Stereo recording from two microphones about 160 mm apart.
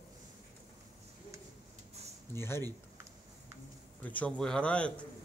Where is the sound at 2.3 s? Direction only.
15° left (ahead or behind).